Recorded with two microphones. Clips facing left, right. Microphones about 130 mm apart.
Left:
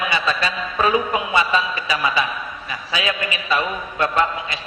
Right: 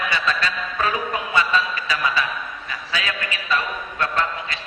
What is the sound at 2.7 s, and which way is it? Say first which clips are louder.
A man's voice: left 4 dB; 15° left (ahead or behind).